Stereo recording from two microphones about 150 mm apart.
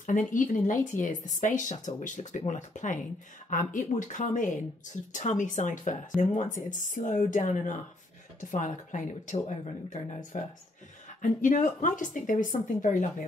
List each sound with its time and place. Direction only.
0.0 s speech: 60° left (ahead or behind)